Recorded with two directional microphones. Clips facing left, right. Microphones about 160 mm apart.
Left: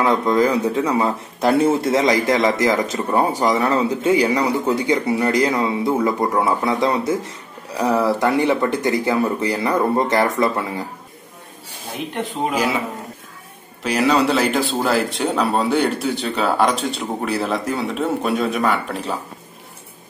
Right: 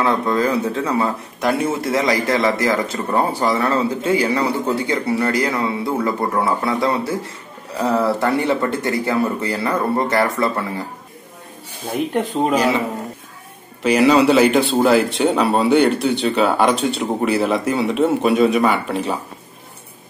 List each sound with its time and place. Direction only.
0.0 s speech: 15° left (ahead or behind)
1.4 s speech: 30° left (ahead or behind)
12.5 s speech: 5° left (ahead or behind)
13.8 s speech: centre (ahead or behind)